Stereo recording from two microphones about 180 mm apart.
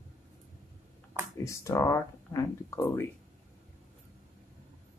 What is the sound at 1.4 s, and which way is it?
Speech, 20° left (ahead or behind).